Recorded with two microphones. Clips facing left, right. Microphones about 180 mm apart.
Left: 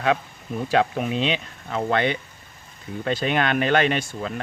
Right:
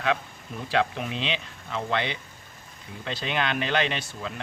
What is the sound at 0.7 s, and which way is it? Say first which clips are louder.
Speech: left 4 dB; 45° left (ahead or behind).